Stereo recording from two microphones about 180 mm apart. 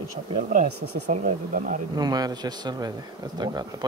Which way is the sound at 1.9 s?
20° right (ahead or behind).